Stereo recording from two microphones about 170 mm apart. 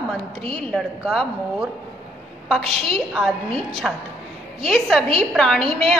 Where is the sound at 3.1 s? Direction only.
Centre (ahead or behind).